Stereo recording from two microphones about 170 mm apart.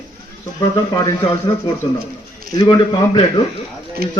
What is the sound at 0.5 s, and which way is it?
Speech, 20° left (ahead or behind).